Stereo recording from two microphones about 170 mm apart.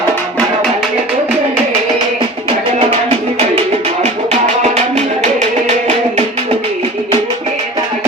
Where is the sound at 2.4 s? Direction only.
35° right (ahead or behind).